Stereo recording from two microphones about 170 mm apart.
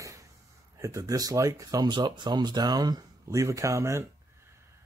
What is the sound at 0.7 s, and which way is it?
Speech, 20° right (ahead or behind).